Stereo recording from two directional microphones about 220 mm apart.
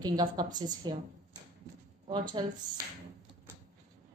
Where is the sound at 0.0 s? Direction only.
15° right (ahead or behind).